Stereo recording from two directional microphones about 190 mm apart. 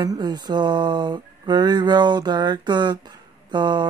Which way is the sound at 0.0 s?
20° right (ahead or behind).